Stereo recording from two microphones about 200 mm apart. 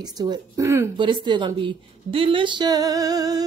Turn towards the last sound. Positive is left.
turn(degrees=-20)  # may be behind; listen again after turning